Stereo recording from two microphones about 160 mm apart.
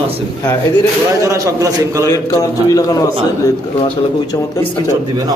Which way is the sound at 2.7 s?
20° left (ahead or behind).